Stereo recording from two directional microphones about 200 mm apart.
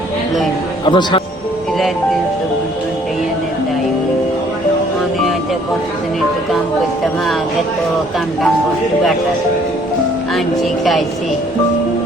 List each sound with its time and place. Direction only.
0.9 s speech: 25° left (ahead or behind)